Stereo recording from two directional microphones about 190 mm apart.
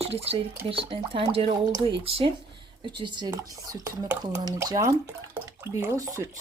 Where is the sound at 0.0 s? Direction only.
30° right (ahead or behind).